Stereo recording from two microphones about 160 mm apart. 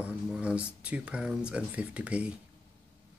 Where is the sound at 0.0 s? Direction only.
5° right (ahead or behind).